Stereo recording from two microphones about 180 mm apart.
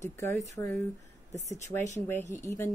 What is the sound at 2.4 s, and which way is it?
Speech, 15° left (ahead or behind).